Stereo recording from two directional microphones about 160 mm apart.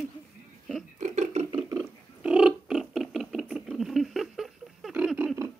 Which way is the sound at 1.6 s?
10° right (ahead or behind).